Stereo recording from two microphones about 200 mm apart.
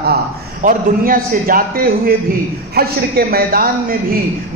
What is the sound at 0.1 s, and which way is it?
A man's voice, 45° right (ahead or behind).